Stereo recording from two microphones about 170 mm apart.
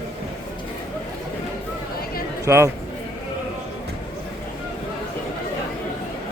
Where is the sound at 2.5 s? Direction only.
15° right (ahead or behind).